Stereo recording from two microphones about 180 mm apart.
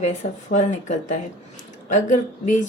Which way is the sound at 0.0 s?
40° left (ahead or behind).